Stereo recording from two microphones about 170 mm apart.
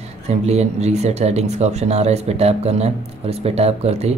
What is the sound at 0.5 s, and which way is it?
Speech, 40° right (ahead or behind).